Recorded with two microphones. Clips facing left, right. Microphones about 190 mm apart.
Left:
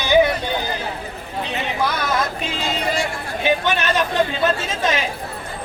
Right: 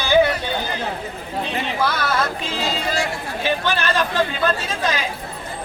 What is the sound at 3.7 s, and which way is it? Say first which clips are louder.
Speech: left 1 dB; 20° left (ahead or behind).